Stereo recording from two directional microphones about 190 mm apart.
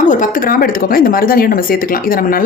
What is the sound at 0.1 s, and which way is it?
Speech, 45° left (ahead or behind).